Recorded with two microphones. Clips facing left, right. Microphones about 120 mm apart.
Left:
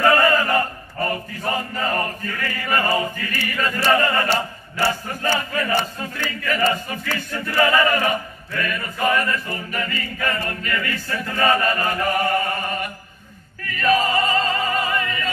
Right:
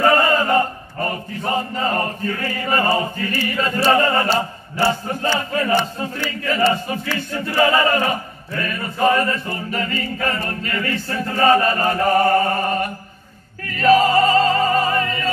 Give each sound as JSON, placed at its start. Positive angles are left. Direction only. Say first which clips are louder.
{"t": 0.0, "sound": "chant", "louder": "right 1 dB", "side_deg": -30}
{"t": 5.4, "sound": "battle cry", "louder": "right 4 dB", "side_deg": -30}
{"t": 7.2, "sound": "chant", "louder": "right 2 dB", "side_deg": -25}
{"t": 13.7, "sound": "music", "louder": "right 5 dB", "side_deg": -35}